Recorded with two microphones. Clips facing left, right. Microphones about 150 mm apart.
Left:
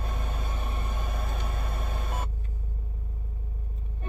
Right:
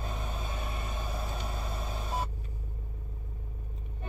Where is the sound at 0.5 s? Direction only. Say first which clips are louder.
Left 2 dB; 55° left (ahead or behind).